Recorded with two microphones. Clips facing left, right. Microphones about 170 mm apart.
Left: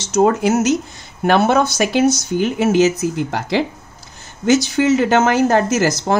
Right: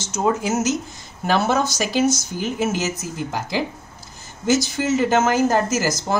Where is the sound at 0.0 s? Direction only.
70° left (ahead or behind).